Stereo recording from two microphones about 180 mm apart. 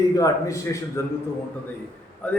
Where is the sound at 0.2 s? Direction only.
15° left (ahead or behind).